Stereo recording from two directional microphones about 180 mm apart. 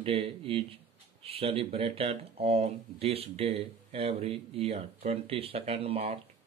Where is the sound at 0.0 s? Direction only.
30° right (ahead or behind).